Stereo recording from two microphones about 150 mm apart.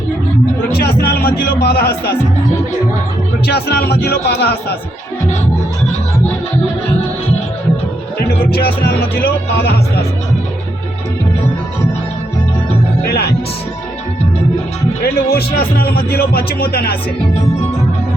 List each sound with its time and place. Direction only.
0.7 s speech: 90° left
3.4 s speech: 90° left
8.4 s speech: 90° left
15.0 s speech: 90° left